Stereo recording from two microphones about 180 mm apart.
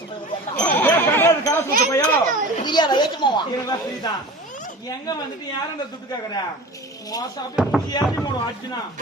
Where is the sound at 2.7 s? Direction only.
25° left (ahead or behind).